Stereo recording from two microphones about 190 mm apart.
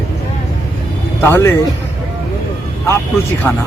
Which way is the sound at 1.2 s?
15° left (ahead or behind).